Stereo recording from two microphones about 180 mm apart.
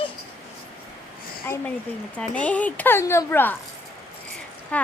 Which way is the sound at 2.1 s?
10° left (ahead or behind).